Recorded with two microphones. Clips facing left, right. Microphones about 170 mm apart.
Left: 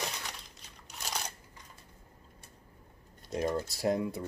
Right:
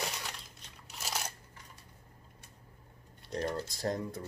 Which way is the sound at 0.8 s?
5° right (ahead or behind).